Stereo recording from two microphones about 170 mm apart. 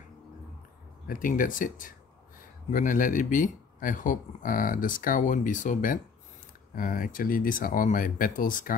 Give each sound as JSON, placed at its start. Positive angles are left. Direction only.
{"t": 1.0, "sound": "speech", "side_deg": 55}